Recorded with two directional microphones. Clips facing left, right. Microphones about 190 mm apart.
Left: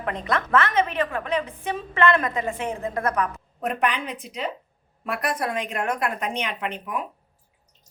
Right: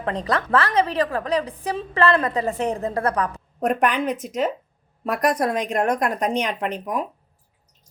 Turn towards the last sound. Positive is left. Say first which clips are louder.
# right 4 dB
turn(degrees=-40)  # may be behind; listen again after turning